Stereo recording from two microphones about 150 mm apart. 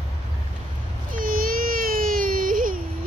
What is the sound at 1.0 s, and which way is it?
Baby cry, 70° right (ahead or behind).